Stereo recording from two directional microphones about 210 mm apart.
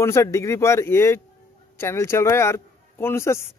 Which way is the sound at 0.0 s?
15° left (ahead or behind).